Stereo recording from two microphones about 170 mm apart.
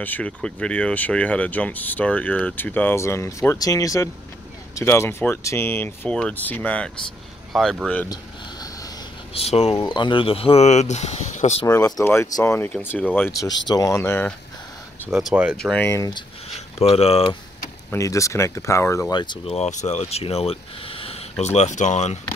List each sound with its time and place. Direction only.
0.0 s speech: 10° left (ahead or behind)
9.3 s speech: 40° left (ahead or behind)
9.8 s speech: 25° left (ahead or behind); by 11.6 s 45° left (ahead or behind)
11.6 s speech: 15° left (ahead or behind)
15.0 s speech: centre (ahead or behind)
15.5 s speech: 5° left (ahead or behind)
15.9 s speech: 25° left (ahead or behind)
17.9 s speech: 20° left (ahead or behind); by 22.2 s 45° left (ahead or behind)